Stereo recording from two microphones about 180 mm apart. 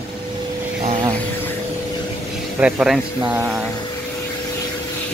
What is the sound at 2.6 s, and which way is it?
Speech, 5° right (ahead or behind).